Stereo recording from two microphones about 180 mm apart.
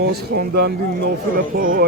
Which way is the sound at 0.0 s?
60° right (ahead or behind).